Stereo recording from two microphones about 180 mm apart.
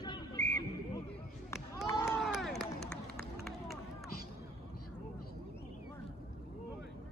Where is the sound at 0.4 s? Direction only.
10° left (ahead or behind).